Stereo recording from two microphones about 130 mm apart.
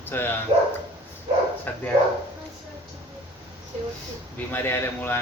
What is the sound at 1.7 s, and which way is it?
Speech, 15° left (ahead or behind).